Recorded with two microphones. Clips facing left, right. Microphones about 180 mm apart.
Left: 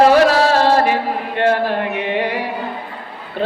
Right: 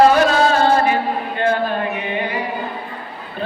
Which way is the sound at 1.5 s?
75° left (ahead or behind).